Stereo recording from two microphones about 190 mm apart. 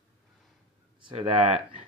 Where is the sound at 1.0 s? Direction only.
30° right (ahead or behind).